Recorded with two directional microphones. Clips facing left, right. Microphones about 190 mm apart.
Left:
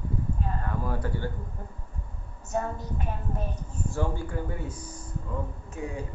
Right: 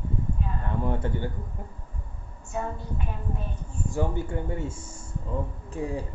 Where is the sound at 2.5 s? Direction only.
40° left (ahead or behind).